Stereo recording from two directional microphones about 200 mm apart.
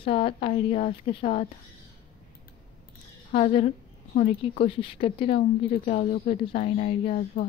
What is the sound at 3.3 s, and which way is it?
Speech, 30° left (ahead or behind).